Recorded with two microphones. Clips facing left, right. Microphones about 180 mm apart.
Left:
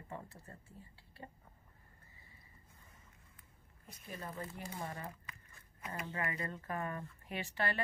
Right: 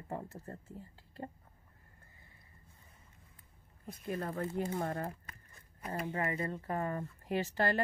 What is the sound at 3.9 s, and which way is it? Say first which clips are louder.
Speech: right 9 dB; 60° right (ahead or behind).